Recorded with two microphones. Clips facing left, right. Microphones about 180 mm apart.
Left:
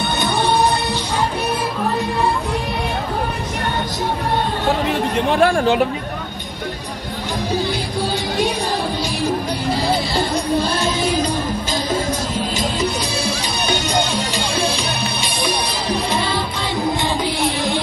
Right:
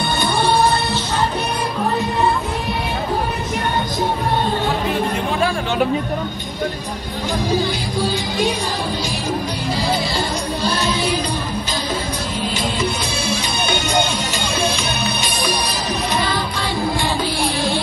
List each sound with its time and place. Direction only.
0.2 s music: 20° left (ahead or behind)
5.3 s speech: 55° left (ahead or behind)
9.8 s music: 55° left (ahead or behind)
12.5 s music: 40° left (ahead or behind); by 17.7 s 20° left (ahead or behind)